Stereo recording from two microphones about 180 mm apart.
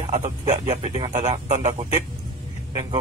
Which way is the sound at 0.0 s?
40° right (ahead or behind).